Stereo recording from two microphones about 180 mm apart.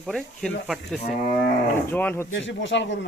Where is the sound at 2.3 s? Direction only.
90° left.